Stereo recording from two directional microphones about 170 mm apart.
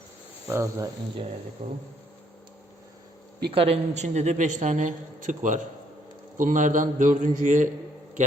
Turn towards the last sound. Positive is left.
turn(degrees=-50)  # may be behind; listen again after turning